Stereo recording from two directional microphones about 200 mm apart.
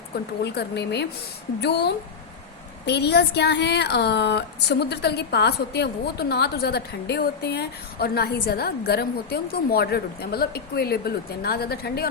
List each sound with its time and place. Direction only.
0.4 s speech: 55° left (ahead or behind)